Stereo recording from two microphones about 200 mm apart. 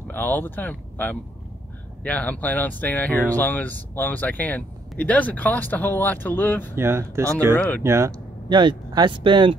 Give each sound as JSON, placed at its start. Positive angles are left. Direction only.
{"t": 0.1, "sound": "speech", "side_deg": 10}
{"t": 6.7, "sound": "speech", "side_deg": -10}
{"t": 7.5, "sound": "speech", "side_deg": 10}
{"t": 7.8, "sound": "speech", "side_deg": -15}